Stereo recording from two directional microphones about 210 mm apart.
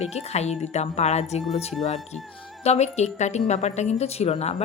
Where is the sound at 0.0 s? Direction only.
30° left (ahead or behind).